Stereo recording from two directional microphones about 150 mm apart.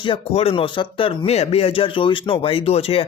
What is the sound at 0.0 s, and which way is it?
Speech, 40° left (ahead or behind).